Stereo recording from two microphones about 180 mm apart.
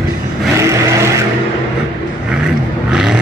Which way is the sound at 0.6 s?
15° right (ahead or behind).